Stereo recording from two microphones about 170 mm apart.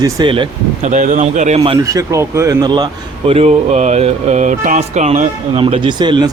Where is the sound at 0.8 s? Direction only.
45° right (ahead or behind).